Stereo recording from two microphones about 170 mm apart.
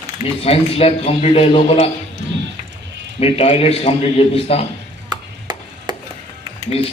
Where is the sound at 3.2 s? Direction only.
35° left (ahead or behind).